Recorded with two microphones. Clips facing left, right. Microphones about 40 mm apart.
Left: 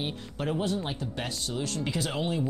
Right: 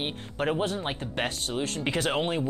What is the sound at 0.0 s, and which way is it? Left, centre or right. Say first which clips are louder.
Speech: right 3 dB; right.